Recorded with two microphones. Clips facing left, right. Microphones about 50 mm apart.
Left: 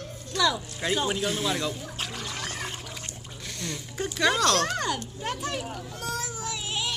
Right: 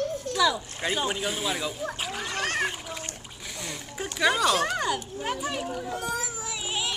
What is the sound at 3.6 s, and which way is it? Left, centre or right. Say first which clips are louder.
Speech: left 3 dB; centre.